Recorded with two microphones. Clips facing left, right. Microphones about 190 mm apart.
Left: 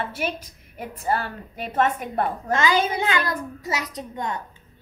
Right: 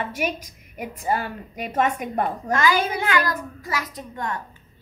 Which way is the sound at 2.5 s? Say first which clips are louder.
Even; 20° left (ahead or behind).